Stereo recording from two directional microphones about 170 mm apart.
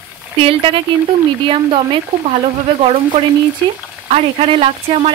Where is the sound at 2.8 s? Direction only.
30° right (ahead or behind).